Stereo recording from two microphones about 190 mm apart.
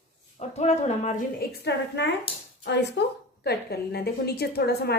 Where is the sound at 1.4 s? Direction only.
65° left (ahead or behind).